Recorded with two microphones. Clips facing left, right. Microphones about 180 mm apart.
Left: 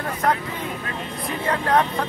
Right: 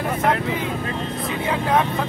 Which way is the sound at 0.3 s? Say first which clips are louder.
Right 1 dB; 80° right.